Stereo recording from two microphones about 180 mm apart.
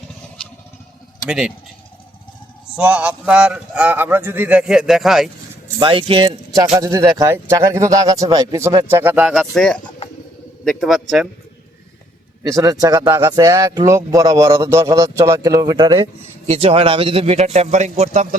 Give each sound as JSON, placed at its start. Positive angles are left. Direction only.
{"t": 1.3, "sound": "a man's voice", "side_deg": -5}
{"t": 2.7, "sound": "speech", "side_deg": -5}
{"t": 5.8, "sound": "a man's voice", "side_deg": -30}
{"t": 12.4, "sound": "a man's voice", "side_deg": -20}